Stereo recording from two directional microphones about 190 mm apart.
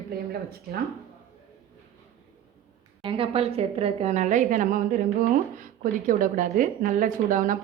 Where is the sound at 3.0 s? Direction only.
30° right (ahead or behind).